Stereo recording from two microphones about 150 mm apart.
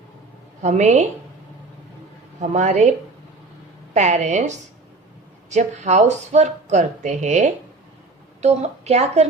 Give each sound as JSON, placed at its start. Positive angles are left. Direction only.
{"t": 0.6, "sound": "speech", "side_deg": -50}
{"t": 2.4, "sound": "speech", "side_deg": -50}
{"t": 3.9, "sound": "speech", "side_deg": -50}